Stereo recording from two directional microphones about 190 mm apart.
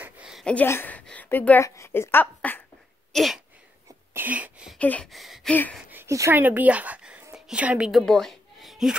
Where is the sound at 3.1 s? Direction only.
Centre (ahead or behind).